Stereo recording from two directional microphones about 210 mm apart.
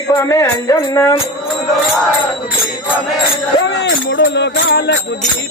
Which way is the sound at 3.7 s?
55° left (ahead or behind).